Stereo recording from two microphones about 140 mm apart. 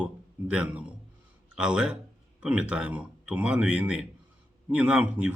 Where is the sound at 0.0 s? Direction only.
10° right (ahead or behind).